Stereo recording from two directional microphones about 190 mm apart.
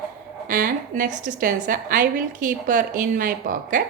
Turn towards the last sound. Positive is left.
turn(degrees=-45)  # may be behind; listen again after turning